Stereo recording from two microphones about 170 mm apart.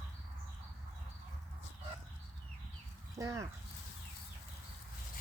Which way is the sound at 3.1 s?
20° right (ahead or behind).